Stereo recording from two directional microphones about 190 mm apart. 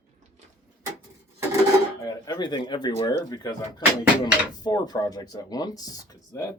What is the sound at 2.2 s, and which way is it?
Speech, 20° left (ahead or behind).